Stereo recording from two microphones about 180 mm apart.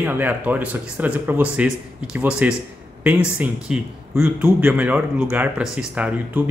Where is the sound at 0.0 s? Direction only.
10° right (ahead or behind).